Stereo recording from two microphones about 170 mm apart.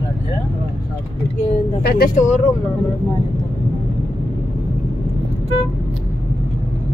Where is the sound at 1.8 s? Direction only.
65° left (ahead or behind).